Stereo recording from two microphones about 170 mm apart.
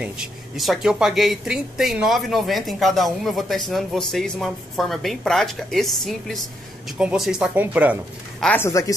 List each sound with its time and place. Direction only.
0.6 s speech: centre (ahead or behind)
8.4 s a man's voice: 5° left (ahead or behind)
8.6 s speech: 20° left (ahead or behind)